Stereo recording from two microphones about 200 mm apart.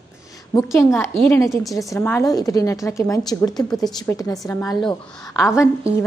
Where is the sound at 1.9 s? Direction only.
15° left (ahead or behind).